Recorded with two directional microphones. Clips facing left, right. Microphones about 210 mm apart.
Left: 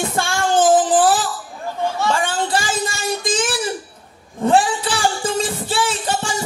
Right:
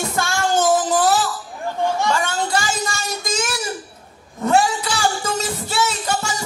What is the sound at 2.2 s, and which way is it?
Speech, 30° left (ahead or behind).